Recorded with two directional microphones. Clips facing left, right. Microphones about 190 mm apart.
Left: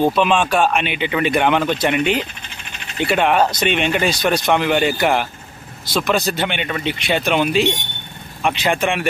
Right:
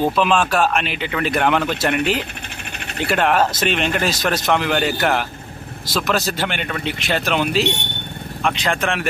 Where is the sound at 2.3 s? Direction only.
60° right (ahead or behind).